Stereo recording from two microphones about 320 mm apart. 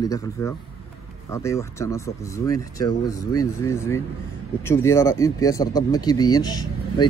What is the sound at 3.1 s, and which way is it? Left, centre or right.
Speech, left.